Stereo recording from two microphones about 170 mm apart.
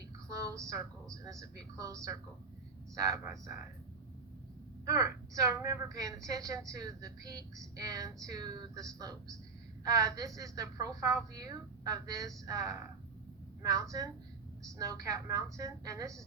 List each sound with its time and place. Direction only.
0.3 s a woman's voice: 20° right (ahead or behind)
4.9 s a woman's voice: 20° right (ahead or behind)